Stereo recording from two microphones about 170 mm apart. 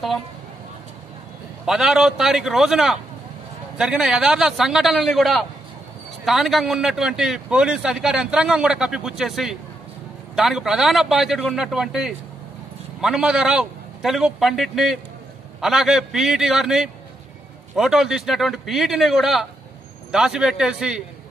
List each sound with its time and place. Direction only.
1.7 s a man's voice: 5° right (ahead or behind)